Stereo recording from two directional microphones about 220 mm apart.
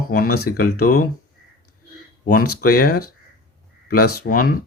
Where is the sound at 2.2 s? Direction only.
40° left (ahead or behind).